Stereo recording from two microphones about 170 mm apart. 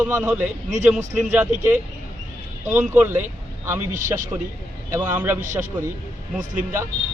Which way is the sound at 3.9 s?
50° right (ahead or behind).